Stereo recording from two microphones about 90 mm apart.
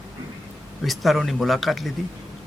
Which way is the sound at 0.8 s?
Centre (ahead or behind).